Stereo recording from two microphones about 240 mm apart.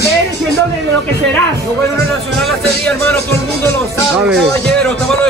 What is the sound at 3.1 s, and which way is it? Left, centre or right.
Music, centre.